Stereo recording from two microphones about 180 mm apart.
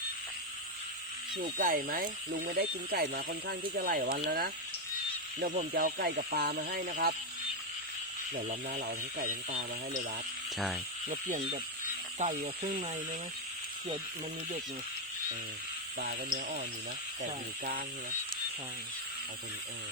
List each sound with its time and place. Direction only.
1.4 s speech: 50° right (ahead or behind)
8.4 s speech: 55° right (ahead or behind)
11.1 s speech: 45° right (ahead or behind)
16.0 s speech: 60° right (ahead or behind)